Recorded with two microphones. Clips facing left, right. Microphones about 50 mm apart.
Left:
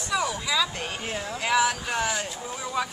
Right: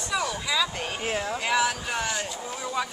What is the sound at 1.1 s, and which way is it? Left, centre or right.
Speech, right.